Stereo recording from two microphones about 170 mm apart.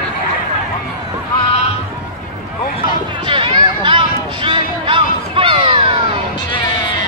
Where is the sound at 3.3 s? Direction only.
30° right (ahead or behind).